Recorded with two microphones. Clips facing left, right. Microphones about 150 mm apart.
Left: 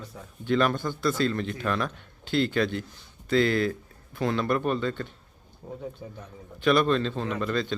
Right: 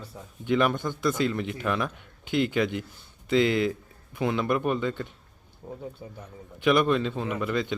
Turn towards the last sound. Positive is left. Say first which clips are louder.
# even
turn(degrees=-15)  # may be behind; listen again after turning